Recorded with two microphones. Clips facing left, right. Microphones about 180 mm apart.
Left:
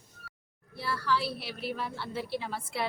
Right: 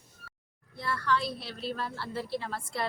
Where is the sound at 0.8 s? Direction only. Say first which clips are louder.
Even; 5° left (ahead or behind).